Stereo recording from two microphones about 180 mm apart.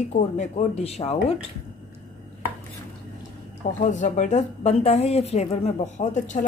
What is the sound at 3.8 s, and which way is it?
A woman's voice, 40° left (ahead or behind).